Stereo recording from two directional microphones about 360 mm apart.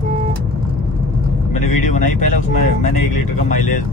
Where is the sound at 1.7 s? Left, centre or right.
Centre.